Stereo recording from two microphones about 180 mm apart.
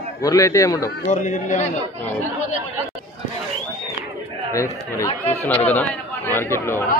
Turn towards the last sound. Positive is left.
turn(degrees=15)  # may be behind; listen again after turning